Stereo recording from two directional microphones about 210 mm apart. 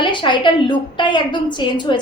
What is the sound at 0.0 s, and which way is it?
A woman's voice, 20° left (ahead or behind).